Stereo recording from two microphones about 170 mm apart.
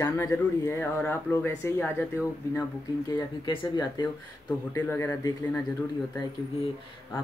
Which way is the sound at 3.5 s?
25° left (ahead or behind).